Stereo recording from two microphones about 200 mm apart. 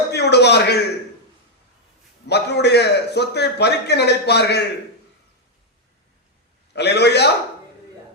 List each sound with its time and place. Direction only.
0.1 s a sound: 55° left (ahead or behind)
2.2 s a man's voice: 55° left (ahead or behind)
6.7 s a man's voice: 55° left (ahead or behind)